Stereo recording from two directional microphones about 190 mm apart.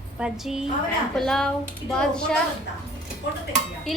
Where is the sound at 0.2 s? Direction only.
5° right (ahead or behind).